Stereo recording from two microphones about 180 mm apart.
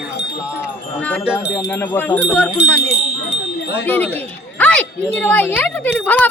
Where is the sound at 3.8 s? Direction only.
10° left (ahead or behind).